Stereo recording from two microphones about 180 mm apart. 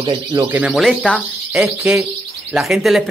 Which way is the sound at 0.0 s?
25° right (ahead or behind).